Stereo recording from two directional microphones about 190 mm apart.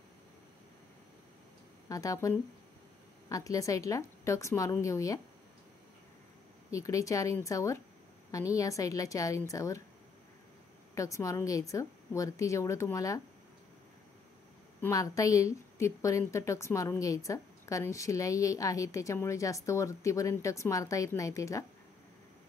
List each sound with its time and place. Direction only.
1.9 s a woman's voice: 15° left (ahead or behind)
6.7 s a woman's voice: 15° left (ahead or behind)
11.0 s a woman's voice: 15° left (ahead or behind)
14.8 s a woman's voice: 15° left (ahead or behind)